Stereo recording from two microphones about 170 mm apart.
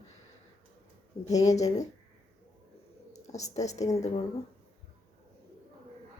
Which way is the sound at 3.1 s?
40° left (ahead or behind).